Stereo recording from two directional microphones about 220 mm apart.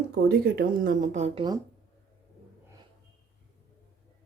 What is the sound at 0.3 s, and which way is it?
Speech, 50° right (ahead or behind).